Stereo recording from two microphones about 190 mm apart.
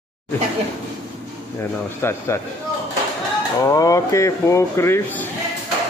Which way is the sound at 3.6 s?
15° left (ahead or behind).